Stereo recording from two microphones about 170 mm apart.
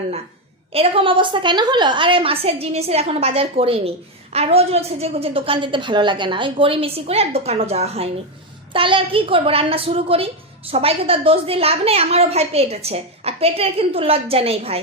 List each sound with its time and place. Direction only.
0.7 s a woman's voice: 35° right (ahead or behind)